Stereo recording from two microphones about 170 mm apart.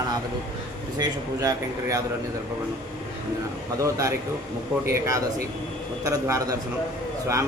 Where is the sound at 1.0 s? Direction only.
20° right (ahead or behind).